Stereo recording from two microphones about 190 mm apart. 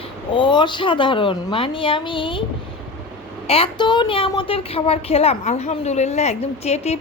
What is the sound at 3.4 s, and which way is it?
A woman's voice, 30° left (ahead or behind).